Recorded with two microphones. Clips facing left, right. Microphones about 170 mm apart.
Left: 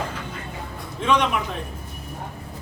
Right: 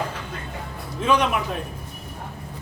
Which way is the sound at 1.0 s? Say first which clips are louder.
Even; 5° right (ahead or behind).